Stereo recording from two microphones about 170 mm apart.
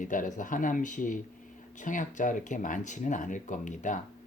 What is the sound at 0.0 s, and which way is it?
Speech, 50° left (ahead or behind).